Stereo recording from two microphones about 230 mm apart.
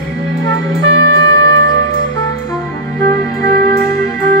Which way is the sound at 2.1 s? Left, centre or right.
Centre.